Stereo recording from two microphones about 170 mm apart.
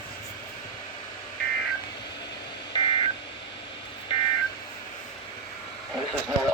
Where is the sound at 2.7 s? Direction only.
30° left (ahead or behind).